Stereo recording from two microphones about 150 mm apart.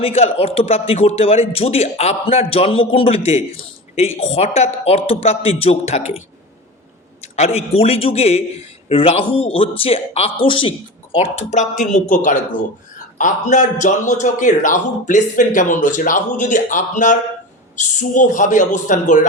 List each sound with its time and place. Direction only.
0.0 s a man's voice: 45° left (ahead or behind)